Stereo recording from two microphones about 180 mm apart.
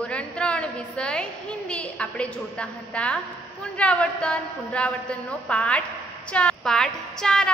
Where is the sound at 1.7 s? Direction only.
5° left (ahead or behind).